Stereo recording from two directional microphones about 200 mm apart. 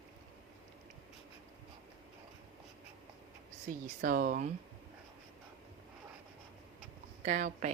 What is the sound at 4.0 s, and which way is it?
Speech, 45° right (ahead or behind).